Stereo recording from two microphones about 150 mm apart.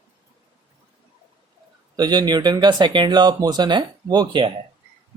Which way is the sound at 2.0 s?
25° right (ahead or behind).